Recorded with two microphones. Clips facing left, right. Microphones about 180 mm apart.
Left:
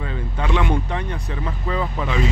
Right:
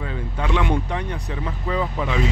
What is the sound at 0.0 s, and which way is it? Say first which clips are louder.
Speech: even; 5° right (ahead or behind).